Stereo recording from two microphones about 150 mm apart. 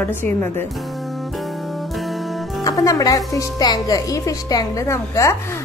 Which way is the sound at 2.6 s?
25° left (ahead or behind).